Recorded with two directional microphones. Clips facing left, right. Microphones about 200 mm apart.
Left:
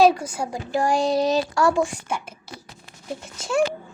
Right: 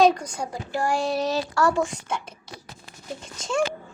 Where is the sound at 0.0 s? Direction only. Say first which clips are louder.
Left 2 dB; 5° left (ahead or behind).